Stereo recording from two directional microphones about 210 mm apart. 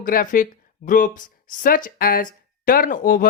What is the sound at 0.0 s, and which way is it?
Speech, 40° left (ahead or behind).